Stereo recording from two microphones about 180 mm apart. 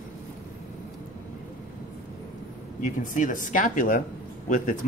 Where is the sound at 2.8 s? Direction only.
45° left (ahead or behind).